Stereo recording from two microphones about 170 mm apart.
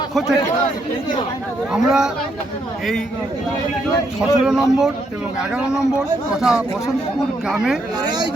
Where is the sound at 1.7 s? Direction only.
5° right (ahead or behind).